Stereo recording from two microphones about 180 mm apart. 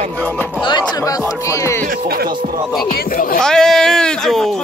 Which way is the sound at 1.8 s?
55° right (ahead or behind).